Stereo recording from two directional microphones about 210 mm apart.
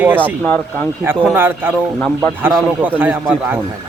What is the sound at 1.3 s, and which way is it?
Speech, 10° right (ahead or behind).